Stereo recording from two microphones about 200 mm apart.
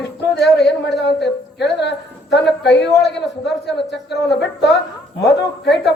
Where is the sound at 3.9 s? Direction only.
60° left (ahead or behind).